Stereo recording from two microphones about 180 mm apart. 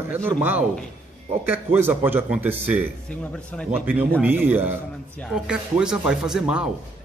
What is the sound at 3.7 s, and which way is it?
Speech, 10° right (ahead or behind).